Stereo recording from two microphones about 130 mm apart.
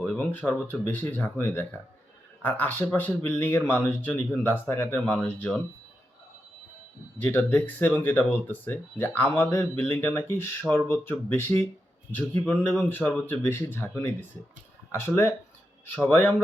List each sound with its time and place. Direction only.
0.0 s speech: 5° left (ahead or behind)
7.2 s speech: 15° left (ahead or behind)